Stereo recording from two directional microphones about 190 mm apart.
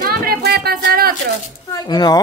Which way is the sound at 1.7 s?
20° left (ahead or behind).